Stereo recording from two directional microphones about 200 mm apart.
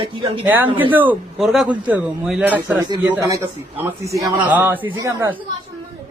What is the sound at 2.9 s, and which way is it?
A man's voice, 20° right (ahead or behind).